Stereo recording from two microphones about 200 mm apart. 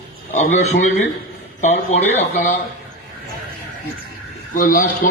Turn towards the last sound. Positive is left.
turn(degrees=40)  # may be behind; listen again after turning